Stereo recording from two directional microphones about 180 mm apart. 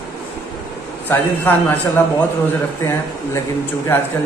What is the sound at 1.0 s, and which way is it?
A man's voice, 10° left (ahead or behind).